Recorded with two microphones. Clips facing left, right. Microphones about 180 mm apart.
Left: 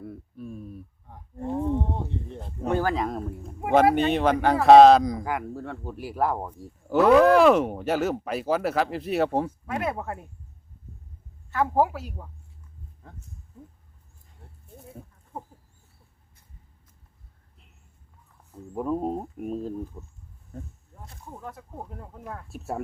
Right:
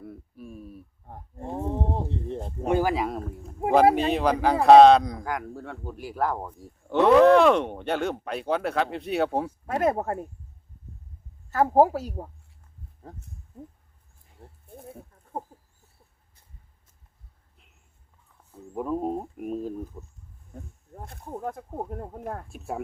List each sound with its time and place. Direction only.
0.0 s a sound: centre (ahead or behind)
1.4 s a sound: 25° right (ahead or behind)
1.6 s a sound: 35° right (ahead or behind)
2.6 s speech: 10° right (ahead or behind)
9.6 s speech: 40° right (ahead or behind)
11.5 s speech: 40° right (ahead or behind)
18.7 s speech: centre (ahead or behind)
20.9 s speech: 55° right (ahead or behind)
22.4 s speech: centre (ahead or behind)